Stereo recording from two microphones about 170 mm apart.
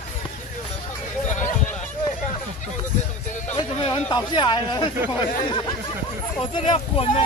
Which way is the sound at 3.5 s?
25° left (ahead or behind).